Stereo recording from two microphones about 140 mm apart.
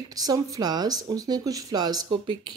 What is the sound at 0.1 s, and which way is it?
Speech, 25° right (ahead or behind).